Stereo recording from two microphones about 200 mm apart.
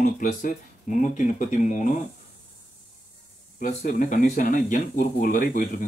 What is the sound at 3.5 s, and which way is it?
Speech, 40° left (ahead or behind).